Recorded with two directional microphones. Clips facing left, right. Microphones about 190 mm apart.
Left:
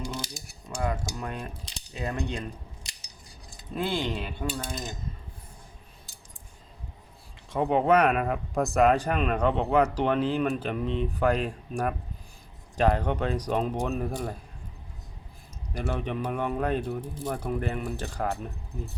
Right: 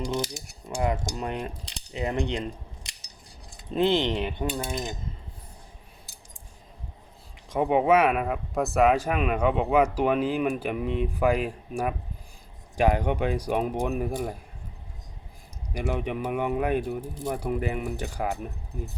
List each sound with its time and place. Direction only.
0.8 s cutlery: 20° right (ahead or behind)
3.7 s cutlery: 25° right (ahead or behind)
7.5 s speech: 10° right (ahead or behind)
15.7 s speech: 15° right (ahead or behind)